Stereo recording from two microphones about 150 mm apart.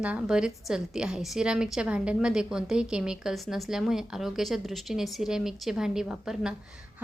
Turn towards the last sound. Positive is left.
turn(degrees=-5)  # may be behind; listen again after turning